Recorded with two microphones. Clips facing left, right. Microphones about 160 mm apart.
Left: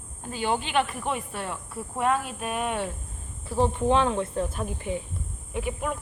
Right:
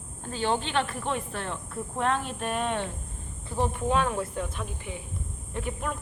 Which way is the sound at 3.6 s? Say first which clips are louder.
Left 4 dB; 25° left (ahead or behind).